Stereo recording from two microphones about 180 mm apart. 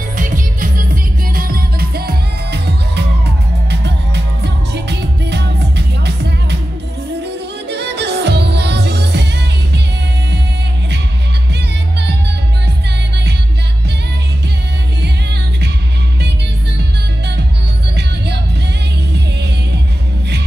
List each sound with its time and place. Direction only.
0.2 s music: 50° right (ahead or behind); by 3.1 s 65° right (ahead or behind)
4.7 s music: 70° right (ahead or behind)
17.9 s music: 70° right (ahead or behind)